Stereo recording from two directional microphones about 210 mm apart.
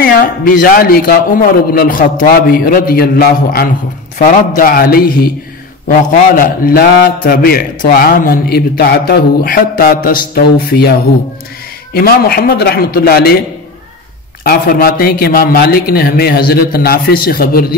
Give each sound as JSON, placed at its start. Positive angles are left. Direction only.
{"t": 0.0, "sound": "a man's voice", "side_deg": 45}
{"t": 14.4, "sound": "a man's voice", "side_deg": 45}